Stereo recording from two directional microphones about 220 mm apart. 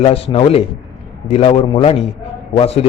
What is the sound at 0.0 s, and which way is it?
Speech, 25° left (ahead or behind).